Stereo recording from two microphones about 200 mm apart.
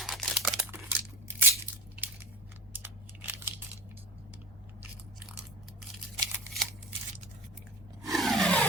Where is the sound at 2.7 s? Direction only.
10° right (ahead or behind).